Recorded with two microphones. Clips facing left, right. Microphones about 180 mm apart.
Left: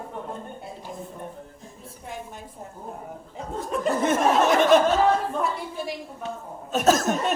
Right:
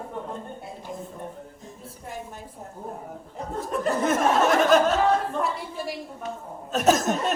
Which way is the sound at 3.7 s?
Centre (ahead or behind).